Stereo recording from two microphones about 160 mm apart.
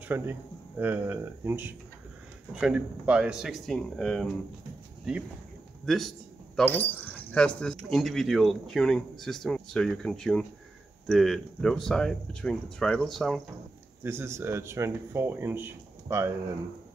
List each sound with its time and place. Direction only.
0.1 s a man's voice: 15° right (ahead or behind); by 4.3 s 5° left (ahead or behind)
5.9 s a man's voice: centre (ahead or behind)
14.0 s speech: 15° right (ahead or behind)